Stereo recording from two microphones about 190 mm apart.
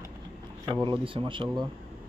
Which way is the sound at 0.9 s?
25° right (ahead or behind).